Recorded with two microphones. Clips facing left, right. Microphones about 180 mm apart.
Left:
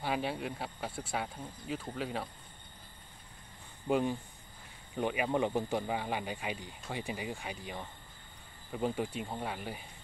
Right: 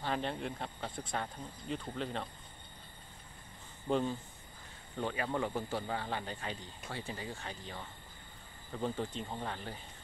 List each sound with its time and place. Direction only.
0.0 s speech: 10° left (ahead or behind)
3.9 s speech: 15° left (ahead or behind)